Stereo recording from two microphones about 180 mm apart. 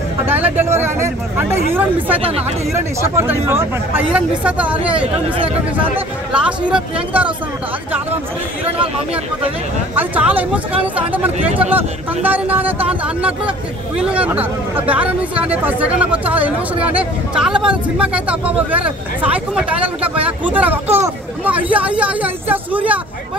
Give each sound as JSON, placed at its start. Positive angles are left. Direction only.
{"t": 0.3, "sound": "speech", "side_deg": -10}
{"t": 2.1, "sound": "speech", "side_deg": -30}
{"t": 2.7, "sound": "speech", "side_deg": -15}
{"t": 4.9, "sound": "speech", "side_deg": -30}
{"t": 5.9, "sound": "speech", "side_deg": -5}
{"t": 8.7, "sound": "speech", "side_deg": -30}
{"t": 9.9, "sound": "speech", "side_deg": -10}